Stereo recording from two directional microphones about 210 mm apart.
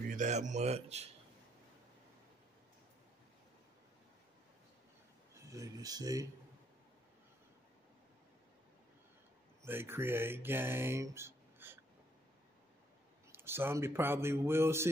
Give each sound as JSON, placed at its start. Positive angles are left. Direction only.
{"t": 0.1, "sound": "speech", "side_deg": -35}
{"t": 5.5, "sound": "speech", "side_deg": -15}
{"t": 9.6, "sound": "speech", "side_deg": -10}
{"t": 13.3, "sound": "speech", "side_deg": -10}